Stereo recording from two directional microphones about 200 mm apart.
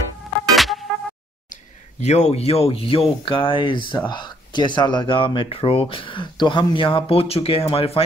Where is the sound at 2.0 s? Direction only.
35° left (ahead or behind).